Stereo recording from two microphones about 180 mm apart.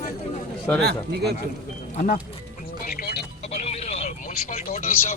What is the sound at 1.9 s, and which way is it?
Speech, 45° left (ahead or behind).